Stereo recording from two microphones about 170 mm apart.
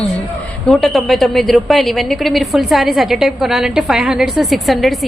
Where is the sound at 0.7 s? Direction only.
Centre (ahead or behind).